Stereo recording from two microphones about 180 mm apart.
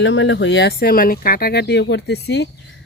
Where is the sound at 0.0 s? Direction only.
90° left.